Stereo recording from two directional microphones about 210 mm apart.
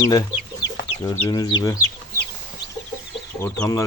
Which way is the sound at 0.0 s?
15° left (ahead or behind).